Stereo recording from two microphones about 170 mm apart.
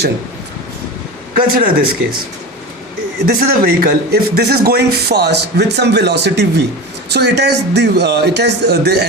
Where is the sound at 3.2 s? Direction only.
65° right (ahead or behind).